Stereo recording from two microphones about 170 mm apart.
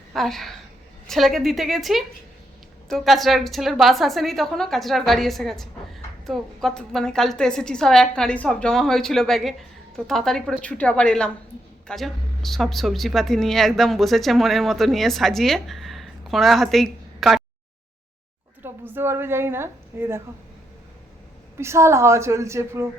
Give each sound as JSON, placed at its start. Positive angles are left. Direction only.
{"t": 0.1, "sound": "a woman's voice", "side_deg": 0}
{"t": 18.6, "sound": "a woman's voice", "side_deg": -10}
{"t": 21.6, "sound": "a woman's voice", "side_deg": -15}